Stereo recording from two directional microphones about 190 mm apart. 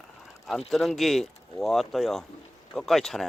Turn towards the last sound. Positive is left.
turn(degrees=0)  # may be behind; listen again after turning